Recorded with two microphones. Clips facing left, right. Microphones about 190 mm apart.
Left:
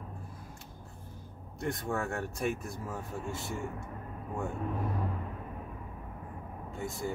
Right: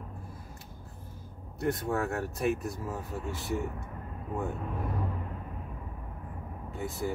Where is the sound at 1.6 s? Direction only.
Centre (ahead or behind).